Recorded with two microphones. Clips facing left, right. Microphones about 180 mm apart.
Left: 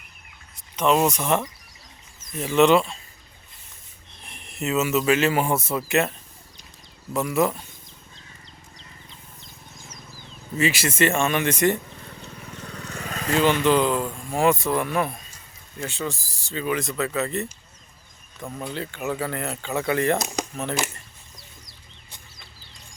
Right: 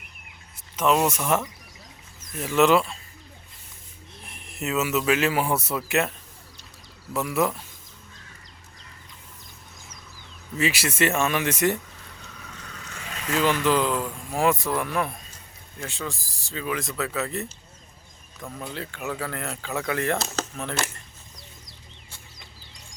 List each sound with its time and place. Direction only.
0.8 s speech: 5° right (ahead or behind)
4.2 s a man's voice: 5° right (ahead or behind)
7.1 s speech: centre (ahead or behind)
10.6 s speech: centre (ahead or behind)
12.2 s vehicle: 35° left (ahead or behind)
13.3 s speech: centre (ahead or behind)
18.4 s speech: 15° left (ahead or behind)
18.7 s speech: centre (ahead or behind)
20.1 s speech: 15° left (ahead or behind)
20.6 s speech: centre (ahead or behind)